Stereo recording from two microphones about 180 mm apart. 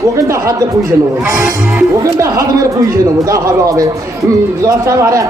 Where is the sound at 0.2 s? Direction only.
15° right (ahead or behind).